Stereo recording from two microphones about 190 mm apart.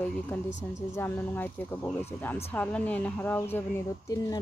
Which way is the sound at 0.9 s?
10° left (ahead or behind).